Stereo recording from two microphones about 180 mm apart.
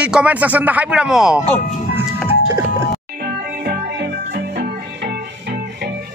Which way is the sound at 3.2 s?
60° right (ahead or behind).